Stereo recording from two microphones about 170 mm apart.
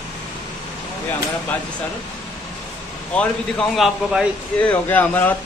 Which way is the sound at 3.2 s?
Centre (ahead or behind).